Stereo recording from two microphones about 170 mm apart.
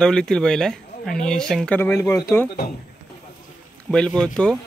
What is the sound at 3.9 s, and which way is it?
Speech, 5° left (ahead or behind).